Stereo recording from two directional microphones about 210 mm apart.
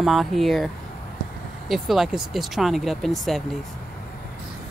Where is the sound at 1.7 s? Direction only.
Centre (ahead or behind).